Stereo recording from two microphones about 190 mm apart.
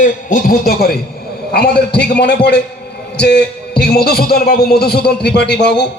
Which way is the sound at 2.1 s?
60° left (ahead or behind).